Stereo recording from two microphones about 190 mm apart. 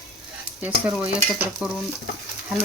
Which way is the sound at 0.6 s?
10° right (ahead or behind).